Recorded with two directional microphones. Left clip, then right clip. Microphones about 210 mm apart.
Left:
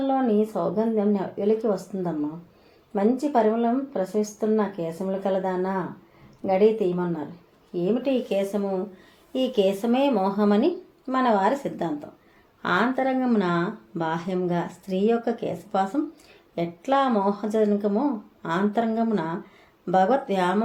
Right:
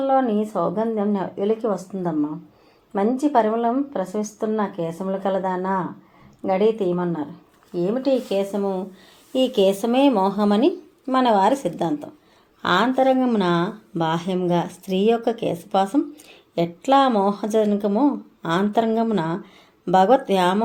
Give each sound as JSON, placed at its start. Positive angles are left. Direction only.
{"t": 0.1, "sound": "speech", "side_deg": -30}
{"t": 8.0, "sound": "speech", "side_deg": -40}